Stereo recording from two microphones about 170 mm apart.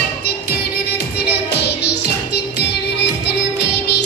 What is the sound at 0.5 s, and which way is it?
Music, 70° left (ahead or behind).